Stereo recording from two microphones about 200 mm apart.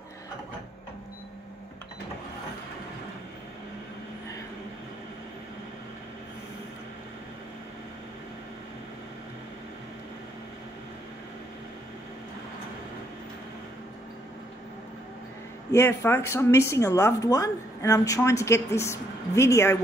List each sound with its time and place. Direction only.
15.7 s speech: 15° left (ahead or behind)